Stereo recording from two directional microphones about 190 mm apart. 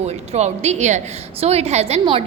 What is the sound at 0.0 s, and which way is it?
A woman's voice, 35° right (ahead or behind).